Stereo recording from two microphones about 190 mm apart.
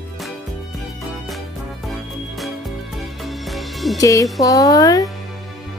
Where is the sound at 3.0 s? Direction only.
Centre (ahead or behind).